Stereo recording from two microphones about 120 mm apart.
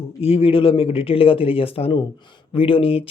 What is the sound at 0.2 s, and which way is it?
Speech, 55° left (ahead or behind).